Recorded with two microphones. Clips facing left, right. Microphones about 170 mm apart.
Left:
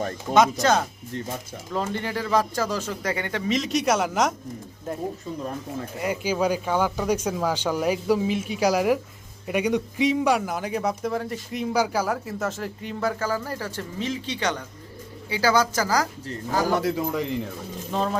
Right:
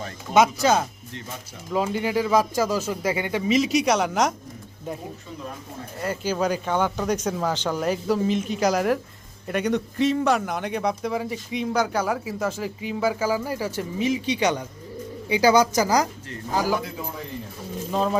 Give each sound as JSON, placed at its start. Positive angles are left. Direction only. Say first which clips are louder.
{"t": 0.6, "sound": "a man's voice", "louder": "right 1 dB", "side_deg": -5}
{"t": 6.0, "sound": "a man's voice", "louder": "even", "side_deg": 10}
{"t": 16.7, "sound": "a man's voice", "louder": "left 5 dB", "side_deg": 80}
{"t": 17.9, "sound": "a man's voice", "louder": "right 2 dB", "side_deg": -5}